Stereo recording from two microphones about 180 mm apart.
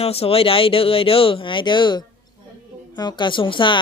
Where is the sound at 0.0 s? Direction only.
35° left (ahead or behind).